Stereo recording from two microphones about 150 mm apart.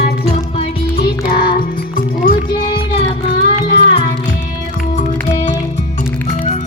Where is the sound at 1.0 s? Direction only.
80° left.